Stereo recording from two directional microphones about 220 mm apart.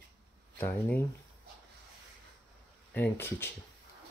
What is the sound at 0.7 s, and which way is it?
Speech, 10° left (ahead or behind).